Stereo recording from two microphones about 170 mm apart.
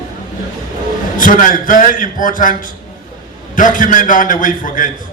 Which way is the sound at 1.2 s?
50° left (ahead or behind).